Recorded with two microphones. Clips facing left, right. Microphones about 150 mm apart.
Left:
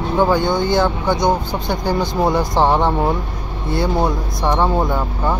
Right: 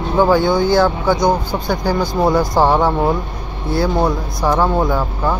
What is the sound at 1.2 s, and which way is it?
Speech, 20° left (ahead or behind).